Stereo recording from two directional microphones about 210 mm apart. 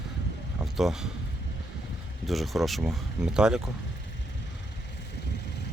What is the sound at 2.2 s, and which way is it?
Speech, centre (ahead or behind).